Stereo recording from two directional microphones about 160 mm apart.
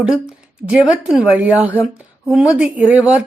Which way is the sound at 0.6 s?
5° right (ahead or behind).